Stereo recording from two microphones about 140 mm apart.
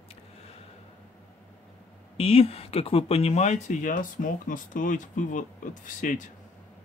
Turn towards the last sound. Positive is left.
turn(degrees=65)  # may be behind; listen again after turning